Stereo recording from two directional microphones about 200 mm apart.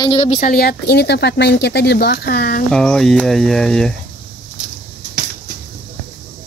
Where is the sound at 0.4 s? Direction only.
45° left (ahead or behind).